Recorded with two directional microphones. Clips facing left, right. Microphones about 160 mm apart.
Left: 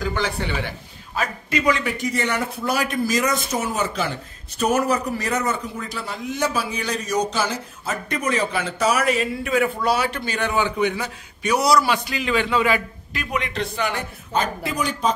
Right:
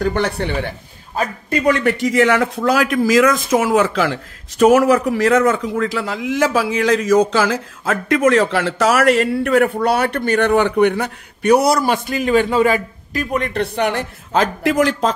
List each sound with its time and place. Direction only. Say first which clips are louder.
0.0 s speech: right 6 dB; 60° right (ahead or behind)
1.1 s a man's voice: right 4 dB; 45° right (ahead or behind)
1.7 s a man's voice: right 8 dB; 70° right (ahead or behind); by 15.1 s 90° right